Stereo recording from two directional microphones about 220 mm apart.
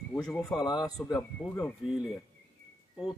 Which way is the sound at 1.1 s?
5° left (ahead or behind).